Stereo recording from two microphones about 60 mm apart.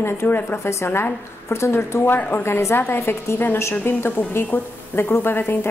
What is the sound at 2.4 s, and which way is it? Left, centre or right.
A woman's voice, left.